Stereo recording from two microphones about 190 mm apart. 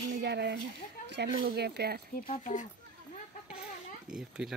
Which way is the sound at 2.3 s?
40° left (ahead or behind).